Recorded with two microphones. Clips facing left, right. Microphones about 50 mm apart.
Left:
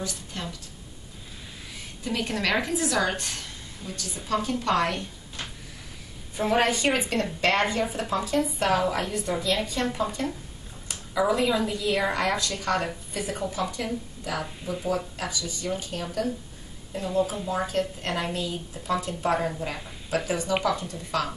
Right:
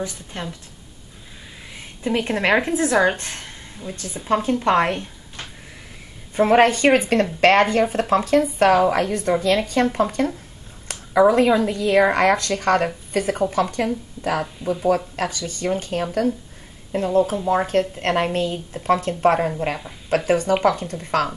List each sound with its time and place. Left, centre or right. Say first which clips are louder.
0.0 s speech: right 5 dB; right
2.0 s a woman's voice: right 7 dB; right
6.3 s a woman's voice: right 8 dB; right
15.0 s speech: right 6 dB; right